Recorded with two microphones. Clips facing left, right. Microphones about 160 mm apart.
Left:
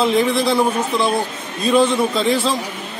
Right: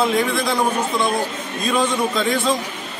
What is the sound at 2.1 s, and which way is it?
Speech, 30° left (ahead or behind).